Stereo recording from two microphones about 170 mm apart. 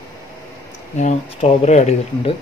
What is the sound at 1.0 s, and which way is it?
Speech, 40° left (ahead or behind).